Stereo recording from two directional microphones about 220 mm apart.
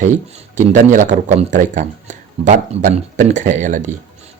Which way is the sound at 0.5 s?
35° right (ahead or behind).